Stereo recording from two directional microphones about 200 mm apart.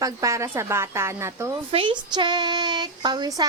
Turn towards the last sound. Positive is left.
turn(degrees=-20)  # may be behind; listen again after turning